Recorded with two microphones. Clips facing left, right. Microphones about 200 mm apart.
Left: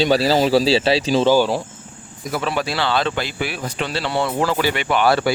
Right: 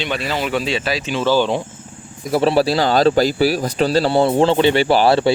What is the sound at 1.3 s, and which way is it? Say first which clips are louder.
Speech: right 2 dB; 10° left (ahead or behind).